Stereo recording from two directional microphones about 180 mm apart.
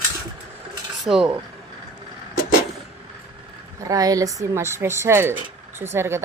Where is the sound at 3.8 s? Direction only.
20° right (ahead or behind).